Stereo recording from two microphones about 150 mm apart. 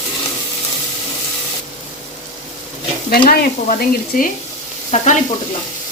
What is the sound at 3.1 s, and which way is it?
Stir, 80° left.